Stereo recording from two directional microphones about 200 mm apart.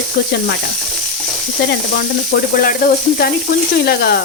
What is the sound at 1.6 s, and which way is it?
Speech, 50° left (ahead or behind).